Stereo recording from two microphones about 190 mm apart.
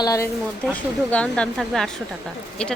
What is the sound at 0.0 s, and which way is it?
Speech, 15° left (ahead or behind).